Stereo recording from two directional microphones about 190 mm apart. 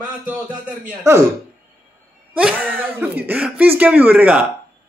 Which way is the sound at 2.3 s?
5° right (ahead or behind).